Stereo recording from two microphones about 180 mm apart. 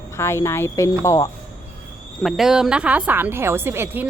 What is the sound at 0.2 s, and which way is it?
A woman's voice, 15° left (ahead or behind).